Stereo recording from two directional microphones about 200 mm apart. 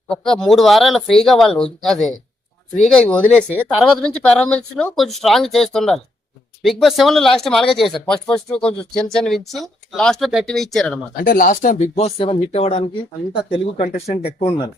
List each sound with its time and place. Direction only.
0.1 s speech: 5° left (ahead or behind)
11.2 s speech: 45° left (ahead or behind)